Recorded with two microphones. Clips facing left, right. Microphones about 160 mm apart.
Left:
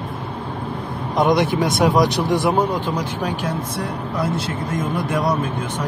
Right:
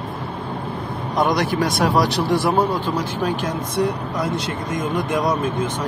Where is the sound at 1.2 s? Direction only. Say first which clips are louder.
Left 2 dB; 25° left (ahead or behind).